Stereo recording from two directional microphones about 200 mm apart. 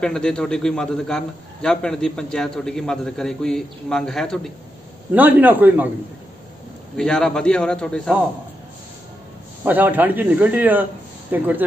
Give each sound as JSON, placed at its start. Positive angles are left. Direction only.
{"t": 0.0, "sound": "a man's voice", "side_deg": 5}
{"t": 5.1, "sound": "speech", "side_deg": -10}
{"t": 7.0, "sound": "a man's voice", "side_deg": 5}
{"t": 9.7, "sound": "speech", "side_deg": -10}